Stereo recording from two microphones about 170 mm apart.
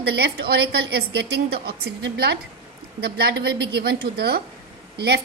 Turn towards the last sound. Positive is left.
turn(degrees=-70)  # may be behind; listen again after turning